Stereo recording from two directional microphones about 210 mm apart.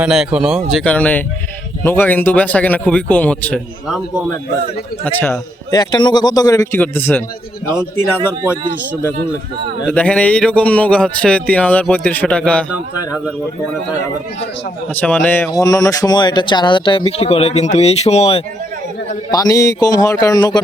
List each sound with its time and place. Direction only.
0.0 s a man's voice: 5° right (ahead or behind)
5.0 s a man's voice: 10° left (ahead or behind)
9.9 s a man's voice: 5° left (ahead or behind)
14.9 s a man's voice: 5° left (ahead or behind); by 18.4 s 30° left (ahead or behind)
19.3 s a man's voice: 15° left (ahead or behind)